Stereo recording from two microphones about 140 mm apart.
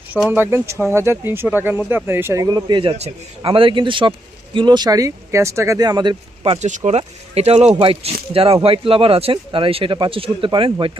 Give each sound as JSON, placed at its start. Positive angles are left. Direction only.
{"t": 0.1, "sound": "speech", "side_deg": -10}
{"t": 2.9, "sound": "speech", "side_deg": -45}
{"t": 6.6, "sound": "speech", "side_deg": -60}